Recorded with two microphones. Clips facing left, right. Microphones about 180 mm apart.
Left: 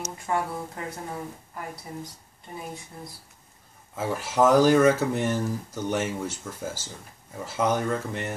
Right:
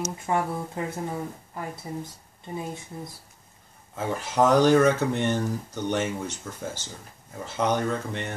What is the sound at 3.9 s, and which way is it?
Speech, 5° left (ahead or behind).